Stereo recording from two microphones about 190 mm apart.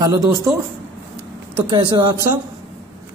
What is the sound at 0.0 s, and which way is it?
Speech, 20° right (ahead or behind).